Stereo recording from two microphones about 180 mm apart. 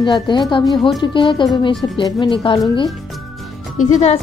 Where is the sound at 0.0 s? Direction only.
25° left (ahead or behind).